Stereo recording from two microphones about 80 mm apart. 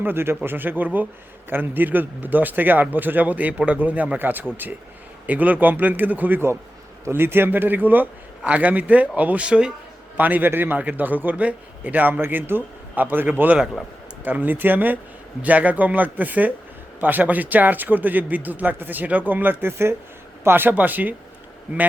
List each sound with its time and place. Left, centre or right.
0.0 s a man's voice: right